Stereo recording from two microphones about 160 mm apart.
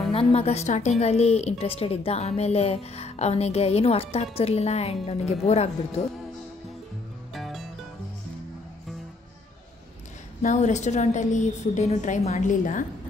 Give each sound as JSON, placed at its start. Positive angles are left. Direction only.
{"t": 0.1, "sound": "a woman's voice", "side_deg": 35}
{"t": 7.3, "sound": "music", "side_deg": 0}
{"t": 10.4, "sound": "a woman's voice", "side_deg": 45}